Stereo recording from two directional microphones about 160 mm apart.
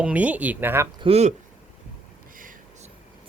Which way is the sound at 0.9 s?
40° right (ahead or behind).